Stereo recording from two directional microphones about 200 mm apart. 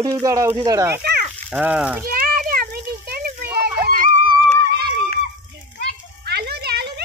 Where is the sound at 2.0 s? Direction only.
45° right (ahead or behind).